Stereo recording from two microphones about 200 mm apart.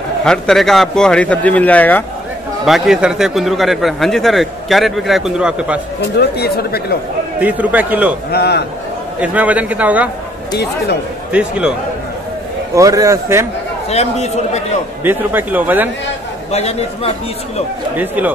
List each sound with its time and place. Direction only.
0.2 s a man's voice: 5° left (ahead or behind)
6.3 s speech: 50° left (ahead or behind)
7.3 s a man's voice: 5° right (ahead or behind)
8.3 s speech: 55° left (ahead or behind)
9.2 s a man's voice: 5° right (ahead or behind)
11.3 s a man's voice: 5° right (ahead or behind)
12.7 s a man's voice: 15° right (ahead or behind)
13.8 s a man's voice: 35° left (ahead or behind)
15.0 s a man's voice: 10° right (ahead or behind)
16.5 s a man's voice: 30° left (ahead or behind)
17.9 s a man's voice: 10° right (ahead or behind)